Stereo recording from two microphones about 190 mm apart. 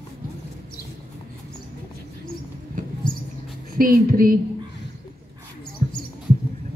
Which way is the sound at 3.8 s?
50° right (ahead or behind).